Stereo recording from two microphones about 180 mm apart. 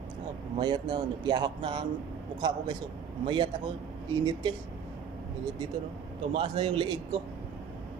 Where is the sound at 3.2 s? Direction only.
25° right (ahead or behind).